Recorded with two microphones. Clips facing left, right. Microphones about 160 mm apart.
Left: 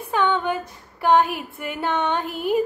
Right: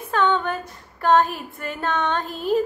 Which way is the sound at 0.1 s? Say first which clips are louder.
Even; 10° left (ahead or behind).